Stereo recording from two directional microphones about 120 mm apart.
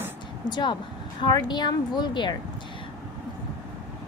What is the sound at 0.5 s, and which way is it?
A woman's voice, 40° left (ahead or behind).